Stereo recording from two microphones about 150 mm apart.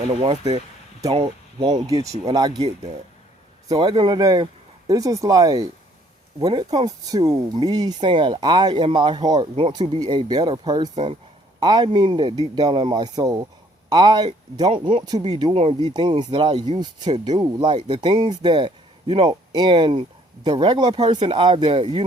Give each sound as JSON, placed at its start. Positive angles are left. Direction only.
{"t": 0.1, "sound": "speech", "side_deg": -40}
{"t": 3.7, "sound": "speech", "side_deg": -30}
{"t": 10.0, "sound": "speech", "side_deg": -25}
{"t": 10.9, "sound": "speech", "side_deg": -45}
{"t": 11.6, "sound": "speech", "side_deg": -25}
{"t": 15.0, "sound": "speech", "side_deg": -25}